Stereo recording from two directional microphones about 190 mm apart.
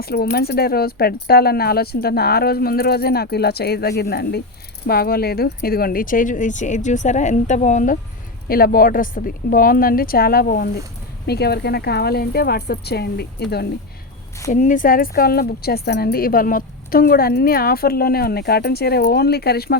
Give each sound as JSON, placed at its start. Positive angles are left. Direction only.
{"t": 0.0, "sound": "a woman's voice", "side_deg": 55}
{"t": 8.4, "sound": "a woman's voice", "side_deg": 50}
{"t": 14.5, "sound": "a woman's voice", "side_deg": 40}